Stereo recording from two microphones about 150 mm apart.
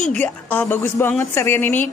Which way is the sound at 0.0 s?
10° left (ahead or behind).